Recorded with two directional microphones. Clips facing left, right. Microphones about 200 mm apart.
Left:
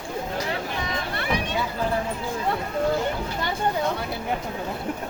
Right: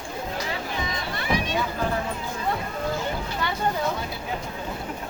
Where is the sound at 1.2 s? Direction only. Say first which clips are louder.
Right 2 dB; 60° left (ahead or behind).